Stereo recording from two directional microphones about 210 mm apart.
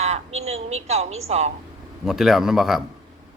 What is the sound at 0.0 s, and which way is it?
A woman's voice, 30° right (ahead or behind).